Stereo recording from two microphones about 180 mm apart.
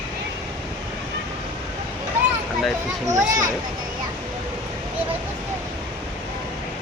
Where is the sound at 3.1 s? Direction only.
20° right (ahead or behind).